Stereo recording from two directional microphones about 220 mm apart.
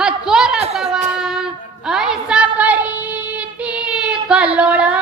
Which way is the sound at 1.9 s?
5° right (ahead or behind).